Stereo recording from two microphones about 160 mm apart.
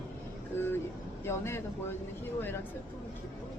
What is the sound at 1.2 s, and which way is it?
Speech, 15° left (ahead or behind).